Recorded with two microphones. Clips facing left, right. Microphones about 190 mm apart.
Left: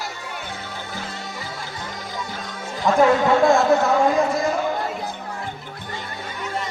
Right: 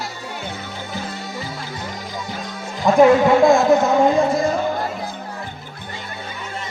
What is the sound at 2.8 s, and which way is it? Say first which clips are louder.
Speech: right 4 dB; 15° right (ahead or behind).